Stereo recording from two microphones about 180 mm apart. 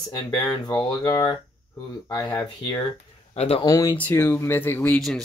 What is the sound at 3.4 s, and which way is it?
Speech, 35° left (ahead or behind).